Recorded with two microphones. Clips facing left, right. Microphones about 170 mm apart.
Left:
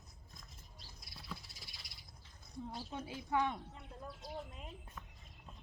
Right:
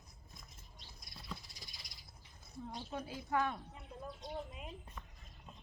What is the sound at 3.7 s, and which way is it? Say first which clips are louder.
Speech: right 2 dB; centre (ahead or behind).